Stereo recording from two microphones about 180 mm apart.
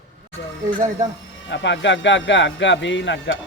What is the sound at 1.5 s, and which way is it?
Speech, 80° left.